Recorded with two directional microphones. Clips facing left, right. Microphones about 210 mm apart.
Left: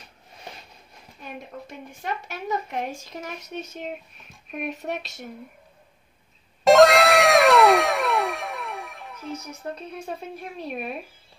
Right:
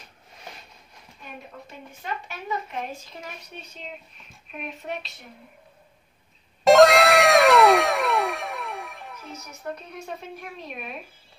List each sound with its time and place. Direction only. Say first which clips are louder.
3.2 s speech: left 6 dB; 45° left (ahead or behind)
6.6 s cat: even; centre (ahead or behind)